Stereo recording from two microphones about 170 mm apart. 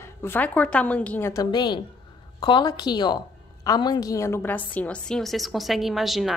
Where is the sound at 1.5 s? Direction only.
25° left (ahead or behind).